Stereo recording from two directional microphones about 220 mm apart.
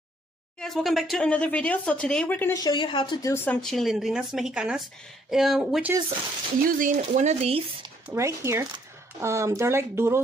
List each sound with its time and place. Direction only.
0.6 s speech: centre (ahead or behind)
6.8 s speech: 35° right (ahead or behind)
8.1 s speech: 15° right (ahead or behind)